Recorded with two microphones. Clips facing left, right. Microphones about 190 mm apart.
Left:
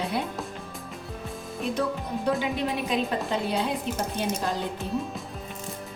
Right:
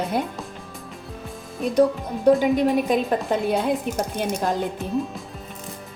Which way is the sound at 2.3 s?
45° right (ahead or behind).